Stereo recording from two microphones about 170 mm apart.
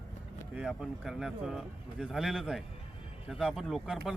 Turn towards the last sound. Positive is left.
turn(degrees=0)  # may be behind; listen again after turning